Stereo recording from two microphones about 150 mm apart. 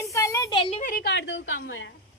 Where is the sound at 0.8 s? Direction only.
75° left (ahead or behind).